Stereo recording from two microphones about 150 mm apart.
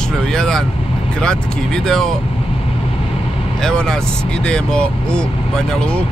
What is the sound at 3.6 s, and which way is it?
Speech, 5° left (ahead or behind).